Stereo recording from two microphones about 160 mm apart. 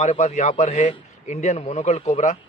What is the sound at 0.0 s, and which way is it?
A man's voice, 45° left (ahead or behind).